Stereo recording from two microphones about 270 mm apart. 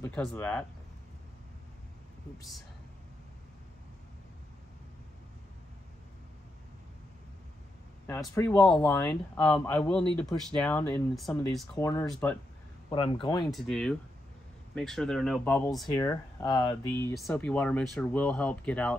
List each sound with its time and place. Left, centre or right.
0.0 s speech: centre
8.1 s speech: centre
11.8 s speech: centre
13.5 s speech: centre